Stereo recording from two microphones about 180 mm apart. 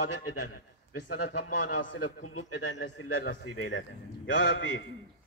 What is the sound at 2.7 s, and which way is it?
A man's voice, 85° left.